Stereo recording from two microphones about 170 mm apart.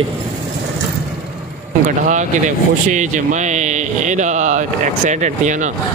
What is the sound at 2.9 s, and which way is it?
Speech, 45° right (ahead or behind).